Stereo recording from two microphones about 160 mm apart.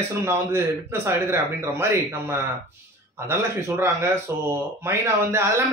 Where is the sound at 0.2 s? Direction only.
15° right (ahead or behind).